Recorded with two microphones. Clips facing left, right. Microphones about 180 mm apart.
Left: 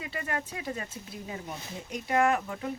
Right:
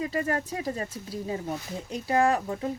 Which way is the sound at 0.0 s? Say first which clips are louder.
Right 7 dB; 40° right (ahead or behind).